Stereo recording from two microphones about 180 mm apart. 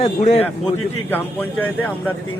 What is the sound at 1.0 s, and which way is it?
Speech, 10° left (ahead or behind).